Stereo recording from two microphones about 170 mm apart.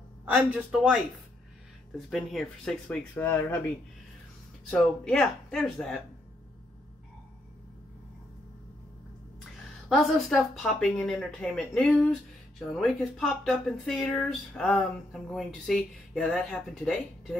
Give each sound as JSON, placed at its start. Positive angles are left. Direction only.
{"t": 0.2, "sound": "a man's voice", "side_deg": -5}
{"t": 2.0, "sound": "speech", "side_deg": 0}
{"t": 4.6, "sound": "speech", "side_deg": 5}
{"t": 9.8, "sound": "speech", "side_deg": 0}